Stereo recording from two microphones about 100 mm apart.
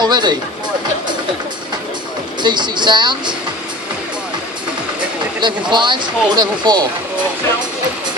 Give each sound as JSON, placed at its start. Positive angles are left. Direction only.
{"t": 0.0, "sound": "speech", "side_deg": -45}
{"t": 2.4, "sound": "speech", "side_deg": -50}
{"t": 5.4, "sound": "speech", "side_deg": -50}